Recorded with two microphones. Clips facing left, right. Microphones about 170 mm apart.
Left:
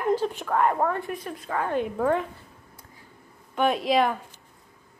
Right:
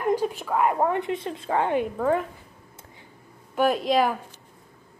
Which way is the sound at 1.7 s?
5° right (ahead or behind).